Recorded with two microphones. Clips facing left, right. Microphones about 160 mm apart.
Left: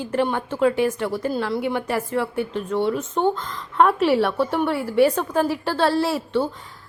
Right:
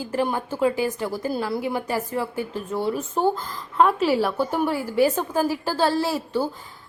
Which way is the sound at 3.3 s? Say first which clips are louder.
Left 1 dB; 35° right (ahead or behind).